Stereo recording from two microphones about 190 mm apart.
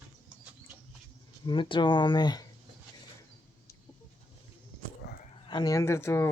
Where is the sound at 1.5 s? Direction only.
25° left (ahead or behind).